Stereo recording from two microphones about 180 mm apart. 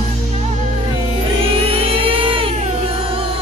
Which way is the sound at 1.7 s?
30° right (ahead or behind).